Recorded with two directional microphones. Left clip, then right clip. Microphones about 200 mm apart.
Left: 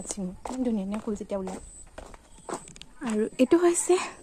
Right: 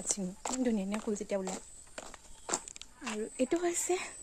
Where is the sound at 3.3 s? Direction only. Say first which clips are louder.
Left 10 dB; 30° left (ahead or behind).